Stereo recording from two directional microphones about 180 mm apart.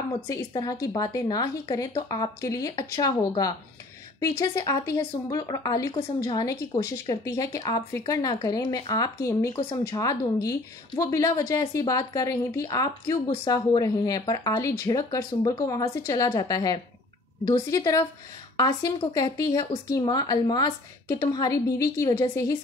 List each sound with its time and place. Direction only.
0.5 s speech: 20° left (ahead or behind)